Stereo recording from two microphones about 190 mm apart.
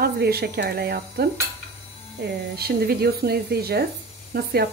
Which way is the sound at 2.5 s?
55° right (ahead or behind).